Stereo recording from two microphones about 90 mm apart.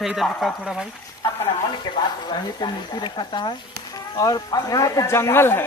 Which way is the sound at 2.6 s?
55° left (ahead or behind).